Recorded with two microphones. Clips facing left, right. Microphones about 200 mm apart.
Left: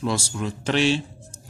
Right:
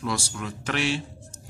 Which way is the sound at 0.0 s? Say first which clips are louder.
Left 4 dB; 25° left (ahead or behind).